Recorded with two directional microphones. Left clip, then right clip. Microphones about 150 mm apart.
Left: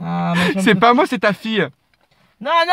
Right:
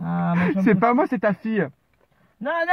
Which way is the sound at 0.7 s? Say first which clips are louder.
Left 6 dB; 60° left (ahead or behind).